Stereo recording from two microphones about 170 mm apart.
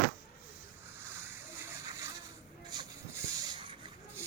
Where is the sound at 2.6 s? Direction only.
20° right (ahead or behind).